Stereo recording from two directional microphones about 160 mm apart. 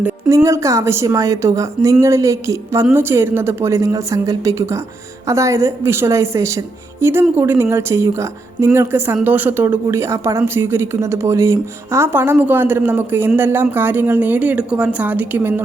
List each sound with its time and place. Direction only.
0.0 s a woman's voice: 20° right (ahead or behind)